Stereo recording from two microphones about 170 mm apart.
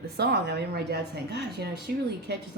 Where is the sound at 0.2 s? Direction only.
70° right (ahead or behind).